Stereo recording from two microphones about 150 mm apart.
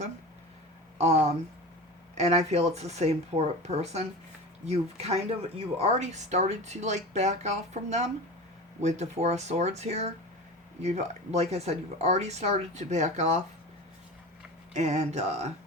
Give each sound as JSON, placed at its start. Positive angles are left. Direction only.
{"t": 0.9, "sound": "speech", "side_deg": -50}
{"t": 14.7, "sound": "speech", "side_deg": -50}